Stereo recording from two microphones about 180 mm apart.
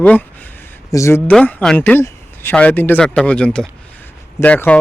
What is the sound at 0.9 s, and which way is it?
Speech, 15° left (ahead or behind).